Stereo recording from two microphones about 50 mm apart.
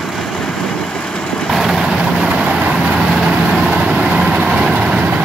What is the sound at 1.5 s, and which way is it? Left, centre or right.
Vehicle, centre.